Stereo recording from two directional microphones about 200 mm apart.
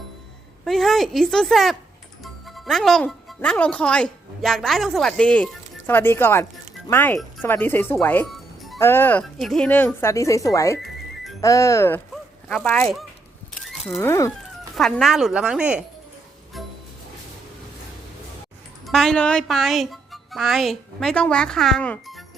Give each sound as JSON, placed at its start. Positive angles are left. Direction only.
{"t": 0.6, "sound": "speech", "side_deg": 0}
{"t": 8.8, "sound": "speech", "side_deg": 10}
{"t": 10.8, "sound": "music", "side_deg": 0}
{"t": 11.3, "sound": "speech", "side_deg": 15}
{"t": 12.1, "sound": "a sound", "side_deg": 5}
{"t": 14.0, "sound": "speech", "side_deg": 15}
{"t": 14.8, "sound": "speech", "side_deg": 0}
{"t": 18.9, "sound": "speech", "side_deg": 0}